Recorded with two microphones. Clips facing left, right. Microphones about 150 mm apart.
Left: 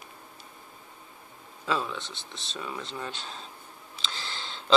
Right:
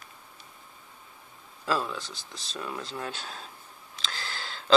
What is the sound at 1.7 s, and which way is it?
Speech, 5° right (ahead or behind).